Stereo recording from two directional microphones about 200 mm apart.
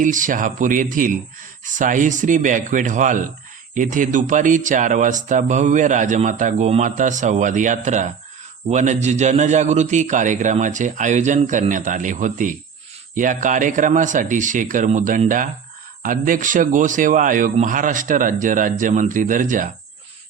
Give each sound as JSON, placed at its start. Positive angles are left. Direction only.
{"t": 0.0, "sound": "speech", "side_deg": -40}